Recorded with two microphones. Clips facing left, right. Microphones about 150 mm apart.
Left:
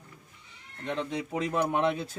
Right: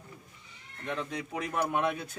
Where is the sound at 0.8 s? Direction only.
25° left (ahead or behind).